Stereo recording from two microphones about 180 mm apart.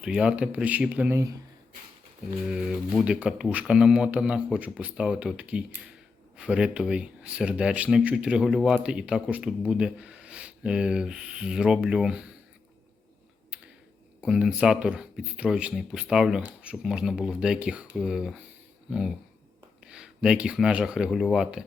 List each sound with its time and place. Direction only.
0.0 s speech: 5° right (ahead or behind)
2.5 s speech: 5° right (ahead or behind)
14.2 s speech: 5° right (ahead or behind)